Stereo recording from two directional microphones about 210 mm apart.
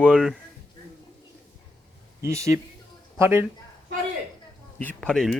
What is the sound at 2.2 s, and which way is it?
Speech, 15° right (ahead or behind).